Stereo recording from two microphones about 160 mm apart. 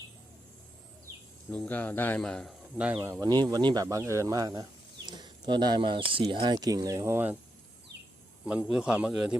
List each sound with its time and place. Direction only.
1.5 s speech: 10° left (ahead or behind); by 7.3 s 15° right (ahead or behind)
8.4 s a man's voice: 5° right (ahead or behind)